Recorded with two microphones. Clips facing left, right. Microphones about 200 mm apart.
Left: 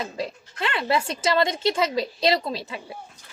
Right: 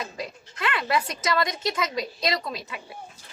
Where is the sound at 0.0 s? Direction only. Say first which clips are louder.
Left 4 dB; 30° left (ahead or behind).